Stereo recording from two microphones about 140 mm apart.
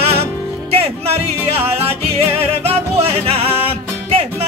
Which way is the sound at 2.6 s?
45° right (ahead or behind).